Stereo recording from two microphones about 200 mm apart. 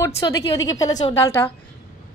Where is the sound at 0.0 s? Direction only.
20° left (ahead or behind).